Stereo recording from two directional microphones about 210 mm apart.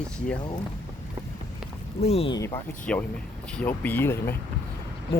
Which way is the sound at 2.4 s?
15° left (ahead or behind).